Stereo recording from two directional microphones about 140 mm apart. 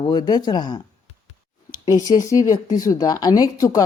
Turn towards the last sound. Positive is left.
turn(degrees=25)  # may be behind; listen again after turning